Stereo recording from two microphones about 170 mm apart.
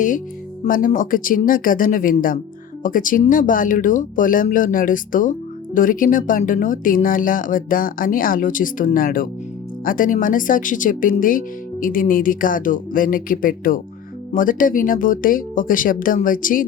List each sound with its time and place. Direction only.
0.6 s speech: 50° left (ahead or behind)